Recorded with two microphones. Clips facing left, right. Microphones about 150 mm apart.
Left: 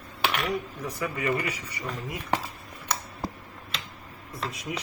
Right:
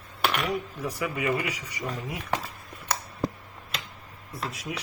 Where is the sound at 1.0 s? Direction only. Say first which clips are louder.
Even; 10° right (ahead or behind).